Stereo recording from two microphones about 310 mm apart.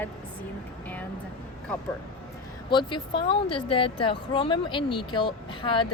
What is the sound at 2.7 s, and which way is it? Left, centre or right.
Speech, centre.